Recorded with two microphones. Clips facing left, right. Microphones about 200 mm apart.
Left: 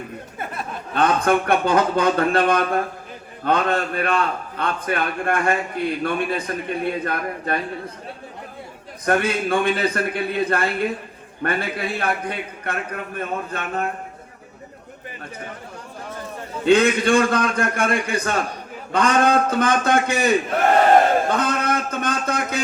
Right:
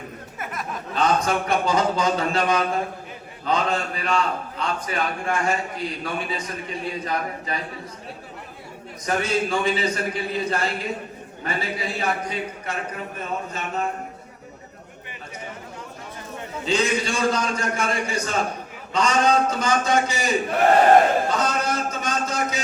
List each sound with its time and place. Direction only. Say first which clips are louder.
0.9 s a man's voice: left 3 dB; 55° left (ahead or behind)
9.0 s a man's voice: left 3 dB; 55° left (ahead or behind)
16.6 s a man's voice: left 7 dB; 55° left (ahead or behind)
21.2 s a sound: left 2 dB; 55° left (ahead or behind)